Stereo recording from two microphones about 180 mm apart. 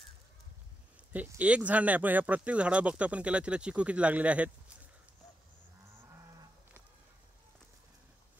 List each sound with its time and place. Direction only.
1.1 s speech: 10° right (ahead or behind)